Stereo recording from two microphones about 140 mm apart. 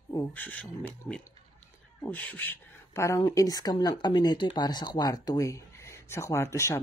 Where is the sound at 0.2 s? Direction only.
10° left (ahead or behind).